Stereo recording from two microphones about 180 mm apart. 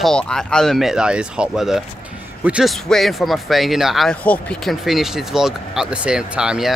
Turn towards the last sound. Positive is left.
turn(degrees=-5)  # may be behind; listen again after turning